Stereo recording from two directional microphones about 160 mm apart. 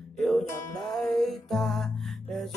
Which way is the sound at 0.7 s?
Centre (ahead or behind).